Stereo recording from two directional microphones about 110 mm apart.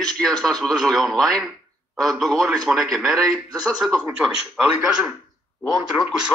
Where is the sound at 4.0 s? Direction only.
5° right (ahead or behind).